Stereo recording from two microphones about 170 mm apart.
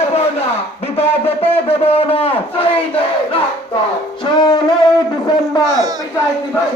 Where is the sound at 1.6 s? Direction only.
35° left (ahead or behind).